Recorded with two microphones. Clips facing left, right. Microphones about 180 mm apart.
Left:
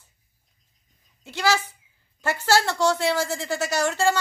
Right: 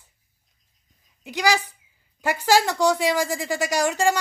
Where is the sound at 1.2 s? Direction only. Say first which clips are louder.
Right 1 dB; 15° right (ahead or behind).